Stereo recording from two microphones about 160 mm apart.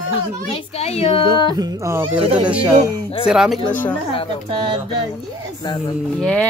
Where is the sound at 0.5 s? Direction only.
40° left (ahead or behind).